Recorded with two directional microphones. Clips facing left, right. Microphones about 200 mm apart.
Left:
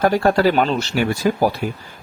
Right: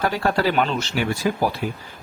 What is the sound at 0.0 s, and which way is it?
Speech, 45° left (ahead or behind).